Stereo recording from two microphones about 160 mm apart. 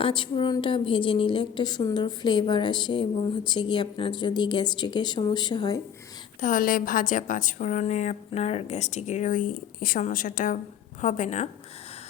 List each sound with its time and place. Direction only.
0.0 s a woman's voice: 30° left (ahead or behind)
6.4 s a woman's voice: 60° left (ahead or behind)